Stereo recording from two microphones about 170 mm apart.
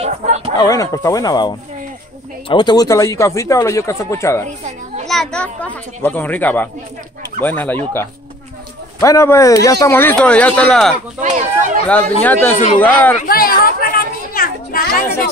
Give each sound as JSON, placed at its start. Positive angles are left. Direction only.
{"t": 0.0, "sound": "a sound", "side_deg": -40}
{"t": 0.6, "sound": "speech", "side_deg": 20}
{"t": 5.0, "sound": "speech", "side_deg": 0}
{"t": 11.2, "sound": "a sound", "side_deg": -50}
{"t": 11.9, "sound": "speech", "side_deg": 10}
{"t": 13.2, "sound": "children playing", "side_deg": 60}